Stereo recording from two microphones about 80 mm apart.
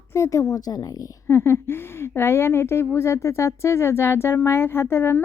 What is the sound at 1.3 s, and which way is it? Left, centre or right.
A woman's voice, left.